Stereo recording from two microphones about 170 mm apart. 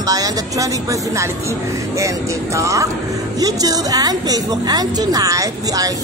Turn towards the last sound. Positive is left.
turn(degrees=-20)  # may be behind; listen again after turning